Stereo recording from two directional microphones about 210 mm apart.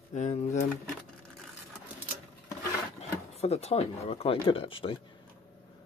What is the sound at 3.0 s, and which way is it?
Speech, 30° left (ahead or behind).